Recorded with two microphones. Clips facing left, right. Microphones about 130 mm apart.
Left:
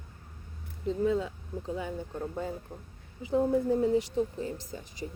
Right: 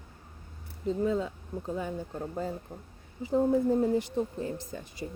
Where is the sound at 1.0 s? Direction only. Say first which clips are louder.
Left 2 dB; 40° right (ahead or behind).